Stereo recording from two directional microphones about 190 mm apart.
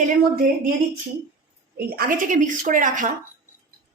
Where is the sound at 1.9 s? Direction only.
50° right (ahead or behind).